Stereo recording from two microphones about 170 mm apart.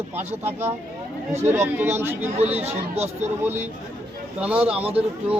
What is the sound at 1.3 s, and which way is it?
Speech, 15° right (ahead or behind).